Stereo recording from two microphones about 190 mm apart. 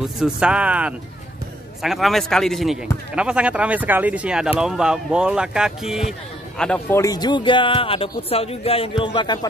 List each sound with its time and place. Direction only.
0.2 s speech: 5° right (ahead or behind)
7.0 s a man's voice: 20° left (ahead or behind)